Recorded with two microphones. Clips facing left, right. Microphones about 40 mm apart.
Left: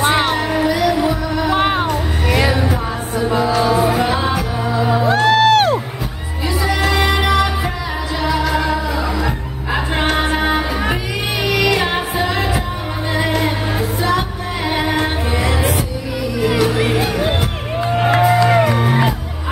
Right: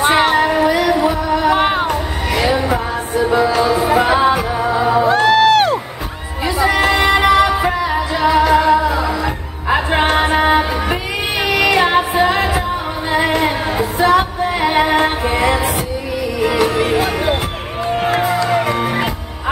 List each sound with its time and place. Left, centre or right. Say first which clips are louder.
0.0 s music: right 3 dB; centre
0.7 s music: right 2 dB; centre
1.5 s music: right 2 dB; centre
3.9 s music: right 5 dB; right; by 5.8 s centre
6.4 s music: right 4 dB; centre
16.4 s music: right 1 dB; centre
18.7 s music: left 1 dB; centre